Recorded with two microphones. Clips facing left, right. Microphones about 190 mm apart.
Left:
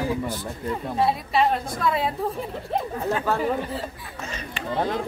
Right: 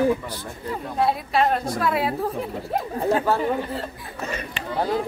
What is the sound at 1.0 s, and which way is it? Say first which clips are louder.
A woman's voice: right 1 dB; centre (ahead or behind).